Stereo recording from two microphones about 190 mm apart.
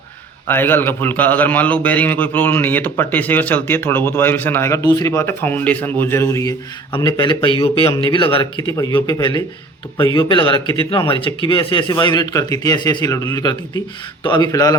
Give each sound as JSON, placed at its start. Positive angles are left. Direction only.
{"t": 0.4, "sound": "a man's voice", "side_deg": 10}
{"t": 6.9, "sound": "speech", "side_deg": 25}